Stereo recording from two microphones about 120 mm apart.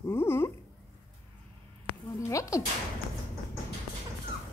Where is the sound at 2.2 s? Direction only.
25° left (ahead or behind).